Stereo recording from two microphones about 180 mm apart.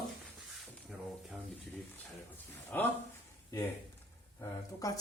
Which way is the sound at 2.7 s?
10° left (ahead or behind).